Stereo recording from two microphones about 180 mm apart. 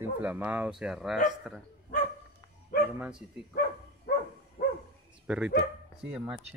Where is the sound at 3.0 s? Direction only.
5° right (ahead or behind).